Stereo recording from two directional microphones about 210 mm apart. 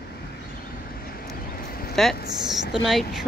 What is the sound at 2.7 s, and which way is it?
Speech, centre (ahead or behind).